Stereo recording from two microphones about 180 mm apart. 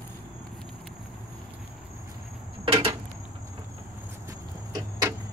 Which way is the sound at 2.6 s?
30° right (ahead or behind).